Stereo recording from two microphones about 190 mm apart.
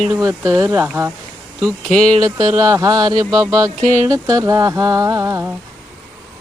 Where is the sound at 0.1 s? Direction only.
15° right (ahead or behind).